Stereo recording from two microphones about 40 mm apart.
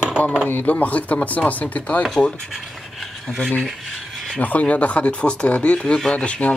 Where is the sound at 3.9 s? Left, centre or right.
Centre.